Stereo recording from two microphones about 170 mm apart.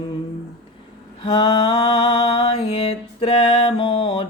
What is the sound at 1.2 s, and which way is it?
Mantra, 30° left (ahead or behind).